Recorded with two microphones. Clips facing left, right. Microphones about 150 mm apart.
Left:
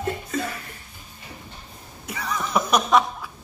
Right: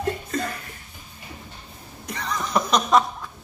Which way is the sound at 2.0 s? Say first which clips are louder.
Even; 5° left (ahead or behind).